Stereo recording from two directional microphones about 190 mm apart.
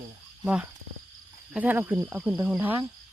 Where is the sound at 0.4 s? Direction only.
5° right (ahead or behind).